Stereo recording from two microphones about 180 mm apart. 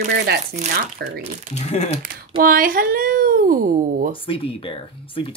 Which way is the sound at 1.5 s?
40° left (ahead or behind).